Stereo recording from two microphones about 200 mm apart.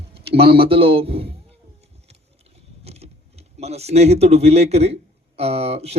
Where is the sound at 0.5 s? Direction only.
25° right (ahead or behind).